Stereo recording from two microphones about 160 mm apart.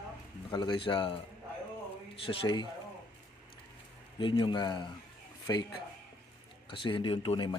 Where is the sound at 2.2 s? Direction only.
30° left (ahead or behind).